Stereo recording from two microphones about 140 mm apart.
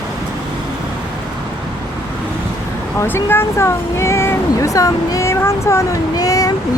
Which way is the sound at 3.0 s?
15° left (ahead or behind).